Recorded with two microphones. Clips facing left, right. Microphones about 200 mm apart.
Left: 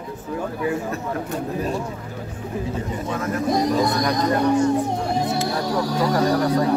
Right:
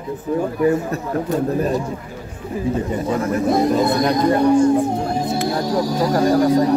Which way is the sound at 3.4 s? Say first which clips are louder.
Right 3 dB; 25° right (ahead or behind).